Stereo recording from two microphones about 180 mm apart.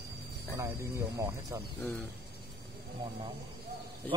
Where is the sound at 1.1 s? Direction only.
15° right (ahead or behind).